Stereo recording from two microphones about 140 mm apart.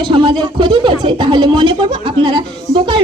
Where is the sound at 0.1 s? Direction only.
35° right (ahead or behind).